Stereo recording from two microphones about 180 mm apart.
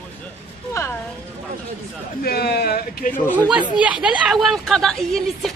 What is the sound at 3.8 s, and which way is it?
A woman's voice, 5° right (ahead or behind).